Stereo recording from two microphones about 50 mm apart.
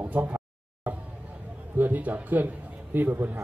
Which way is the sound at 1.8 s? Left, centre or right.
Right.